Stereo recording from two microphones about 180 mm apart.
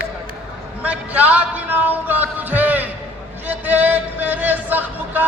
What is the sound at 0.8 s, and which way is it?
Speech, 10° right (ahead or behind).